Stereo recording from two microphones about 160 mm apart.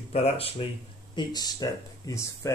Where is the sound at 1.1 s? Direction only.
25° left (ahead or behind).